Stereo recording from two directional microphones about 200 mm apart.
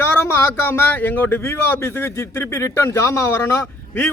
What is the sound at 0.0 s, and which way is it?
Speech, 10° left (ahead or behind).